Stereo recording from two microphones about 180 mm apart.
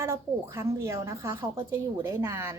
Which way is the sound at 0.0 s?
15° right (ahead or behind).